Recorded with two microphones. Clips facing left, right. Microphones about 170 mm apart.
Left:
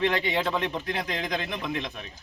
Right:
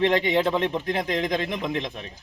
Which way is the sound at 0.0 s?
20° right (ahead or behind).